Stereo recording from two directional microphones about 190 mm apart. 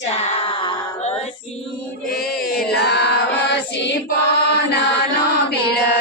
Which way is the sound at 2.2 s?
55° left (ahead or behind).